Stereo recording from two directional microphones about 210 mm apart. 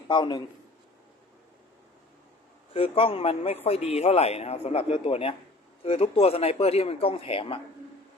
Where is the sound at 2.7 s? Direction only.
25° left (ahead or behind).